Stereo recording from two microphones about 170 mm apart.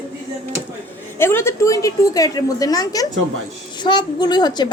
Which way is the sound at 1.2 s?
15° left (ahead or behind).